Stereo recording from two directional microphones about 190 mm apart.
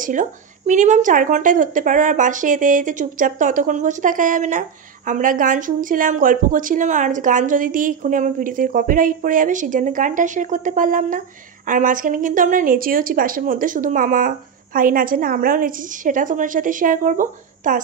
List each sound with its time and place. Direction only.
0.0 s a woman's voice: 40° right (ahead or behind)